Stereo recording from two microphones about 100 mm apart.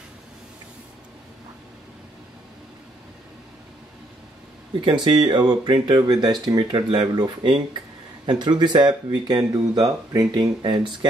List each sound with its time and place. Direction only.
4.7 s speech: 55° right (ahead or behind)